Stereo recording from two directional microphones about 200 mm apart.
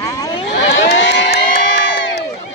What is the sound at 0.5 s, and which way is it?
Crowd, 55° left (ahead or behind).